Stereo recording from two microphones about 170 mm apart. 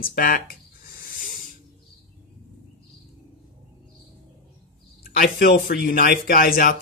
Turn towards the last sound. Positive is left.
turn(degrees=55)  # may be behind; listen again after turning